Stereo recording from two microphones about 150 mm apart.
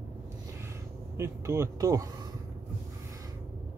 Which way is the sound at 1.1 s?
20° right (ahead or behind).